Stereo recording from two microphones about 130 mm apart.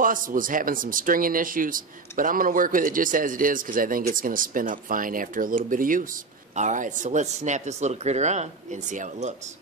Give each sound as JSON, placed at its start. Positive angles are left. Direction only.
{"t": 0.0, "sound": "speech", "side_deg": -90}
{"t": 6.5, "sound": "speech", "side_deg": -70}